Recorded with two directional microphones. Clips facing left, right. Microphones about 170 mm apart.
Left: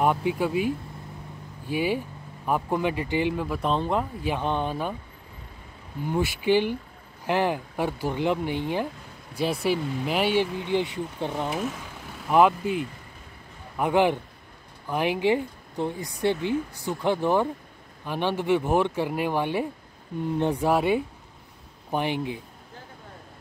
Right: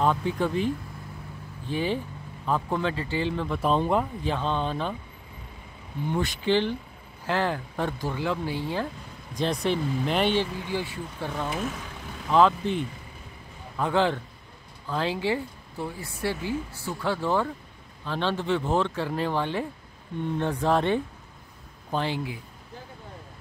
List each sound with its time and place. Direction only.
0.0 s speech: 15° left (ahead or behind)
3.6 s speech: 5° right (ahead or behind)
4.2 s speech: 15° left (ahead or behind)
6.0 s speech: 10° left (ahead or behind)
9.3 s speech: 5° left (ahead or behind)
11.5 s speech: 5° left (ahead or behind)